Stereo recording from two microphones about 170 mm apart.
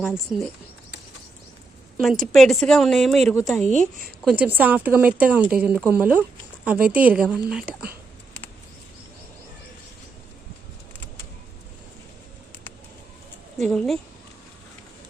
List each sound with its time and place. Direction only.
0.3 s speech: centre (ahead or behind)
2.0 s speech: centre (ahead or behind)
3.7 s speech: 50° right (ahead or behind)
4.2 s speech: 5° right (ahead or behind)
13.6 s speech: centre (ahead or behind)